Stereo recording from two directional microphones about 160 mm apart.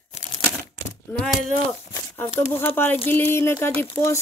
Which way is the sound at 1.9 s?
15° left (ahead or behind).